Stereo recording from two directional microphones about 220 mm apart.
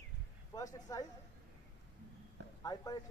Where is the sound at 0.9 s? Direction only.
15° left (ahead or behind).